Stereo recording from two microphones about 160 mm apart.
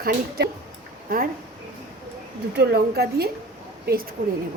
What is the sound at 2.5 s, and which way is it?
Speech, 90° right.